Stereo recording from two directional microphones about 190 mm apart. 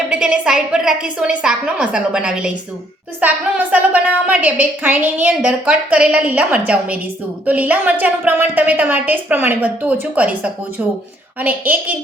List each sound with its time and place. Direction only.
0.1 s a woman's voice: 5° right (ahead or behind)